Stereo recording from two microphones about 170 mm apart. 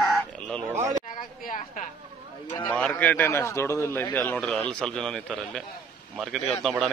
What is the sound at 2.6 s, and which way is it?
A man's voice, 5° left (ahead or behind).